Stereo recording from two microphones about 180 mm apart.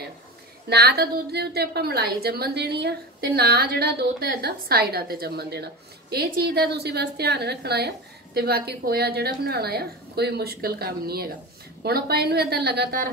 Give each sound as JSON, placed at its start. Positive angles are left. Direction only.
{"t": 0.7, "sound": "a woman's voice", "side_deg": -60}